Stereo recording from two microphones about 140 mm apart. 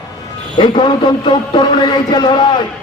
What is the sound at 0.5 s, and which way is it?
A man's voice, 35° left (ahead or behind).